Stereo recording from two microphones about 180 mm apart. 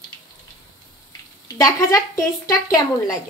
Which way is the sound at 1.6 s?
15° left (ahead or behind).